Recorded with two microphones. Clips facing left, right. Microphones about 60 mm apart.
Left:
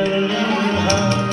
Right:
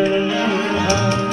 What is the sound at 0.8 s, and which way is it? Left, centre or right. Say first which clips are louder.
Tabla: even; centre.